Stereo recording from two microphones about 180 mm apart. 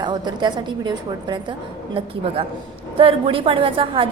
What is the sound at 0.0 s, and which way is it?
A woman's voice, 25° right (ahead or behind).